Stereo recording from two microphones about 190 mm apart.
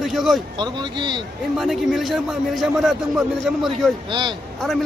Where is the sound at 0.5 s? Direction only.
25° right (ahead or behind).